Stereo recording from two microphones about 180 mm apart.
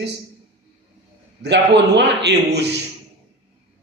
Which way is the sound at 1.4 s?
70° right (ahead or behind).